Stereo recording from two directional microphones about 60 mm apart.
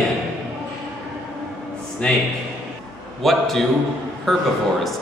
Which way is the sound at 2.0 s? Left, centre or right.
Centre.